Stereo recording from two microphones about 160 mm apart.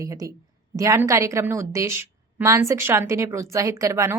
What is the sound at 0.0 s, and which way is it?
A woman's voice, 20° right (ahead or behind).